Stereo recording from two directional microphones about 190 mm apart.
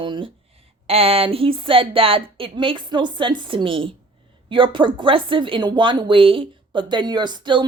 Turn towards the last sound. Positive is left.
turn(degrees=-25)  # may be behind; listen again after turning